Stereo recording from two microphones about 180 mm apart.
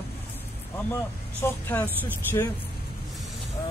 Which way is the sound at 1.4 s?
10° left (ahead or behind).